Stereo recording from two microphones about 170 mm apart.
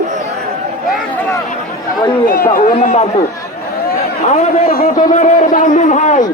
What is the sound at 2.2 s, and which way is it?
Speech, 55° left (ahead or behind).